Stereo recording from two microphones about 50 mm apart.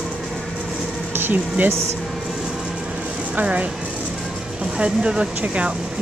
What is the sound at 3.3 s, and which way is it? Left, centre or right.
Speech, right.